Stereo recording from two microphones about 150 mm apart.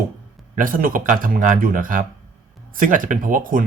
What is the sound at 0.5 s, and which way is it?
Speech, 65° right (ahead or behind).